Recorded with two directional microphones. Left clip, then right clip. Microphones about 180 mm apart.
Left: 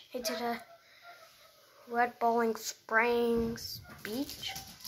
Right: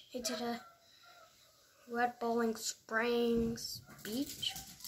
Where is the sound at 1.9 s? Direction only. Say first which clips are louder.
Left 6 dB; 35° right (ahead or behind).